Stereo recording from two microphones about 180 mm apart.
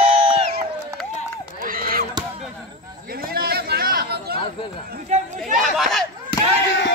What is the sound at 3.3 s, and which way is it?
Chatter, 60° right (ahead or behind).